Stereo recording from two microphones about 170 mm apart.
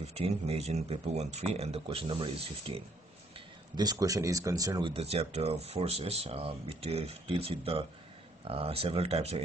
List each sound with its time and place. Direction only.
0.0 s speech: 35° right (ahead or behind)
3.7 s speech: 25° right (ahead or behind)